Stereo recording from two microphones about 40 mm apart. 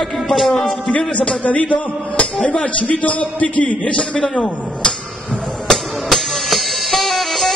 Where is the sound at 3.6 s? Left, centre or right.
Left.